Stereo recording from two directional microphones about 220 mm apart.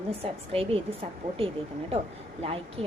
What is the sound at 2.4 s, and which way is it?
Speech, 25° right (ahead or behind).